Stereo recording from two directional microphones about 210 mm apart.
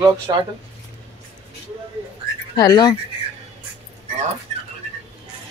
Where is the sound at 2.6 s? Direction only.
20° left (ahead or behind).